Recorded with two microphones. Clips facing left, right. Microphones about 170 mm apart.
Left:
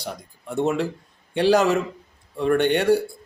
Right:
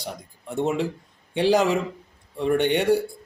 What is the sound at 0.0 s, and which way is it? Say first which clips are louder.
Speech: left 1 dB; 15° right (ahead or behind).